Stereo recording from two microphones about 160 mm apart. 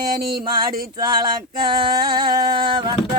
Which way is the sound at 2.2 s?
70° right (ahead or behind).